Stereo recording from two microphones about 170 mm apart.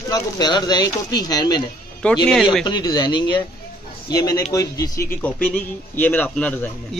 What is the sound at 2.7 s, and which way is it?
Speech, 25° left (ahead or behind).